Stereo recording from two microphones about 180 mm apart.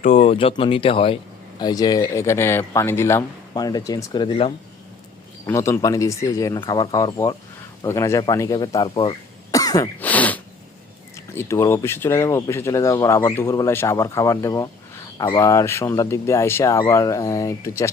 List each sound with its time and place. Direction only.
0.0 s speech: 40° left (ahead or behind)
5.5 s speech: 15° left (ahead or behind)
10.0 s sneeze: 10° left (ahead or behind)
11.3 s speech: 15° left (ahead or behind)